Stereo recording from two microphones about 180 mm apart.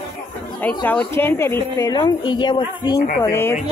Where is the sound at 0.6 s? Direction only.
10° left (ahead or behind); by 3.0 s 25° left (ahead or behind).